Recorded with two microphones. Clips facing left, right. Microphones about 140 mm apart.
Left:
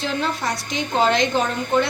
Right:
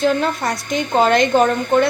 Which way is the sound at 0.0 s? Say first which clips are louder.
Right 6 dB; 50° right (ahead or behind).